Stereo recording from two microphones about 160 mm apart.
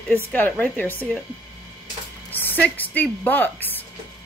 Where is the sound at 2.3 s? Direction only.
10° left (ahead or behind).